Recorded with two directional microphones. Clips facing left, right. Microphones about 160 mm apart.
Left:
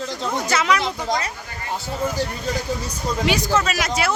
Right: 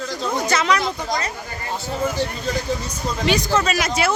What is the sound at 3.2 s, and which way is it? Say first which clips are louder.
Speech: right 1 dB; 10° left (ahead or behind).